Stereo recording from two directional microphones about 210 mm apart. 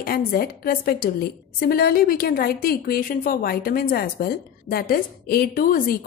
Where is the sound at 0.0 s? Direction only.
45° left (ahead or behind).